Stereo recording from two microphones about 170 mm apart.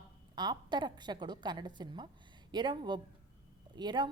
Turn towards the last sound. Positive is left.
turn(degrees=-25)  # may be behind; listen again after turning